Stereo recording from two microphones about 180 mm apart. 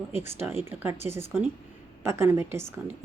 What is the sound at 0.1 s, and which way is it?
Speech, 15° right (ahead or behind).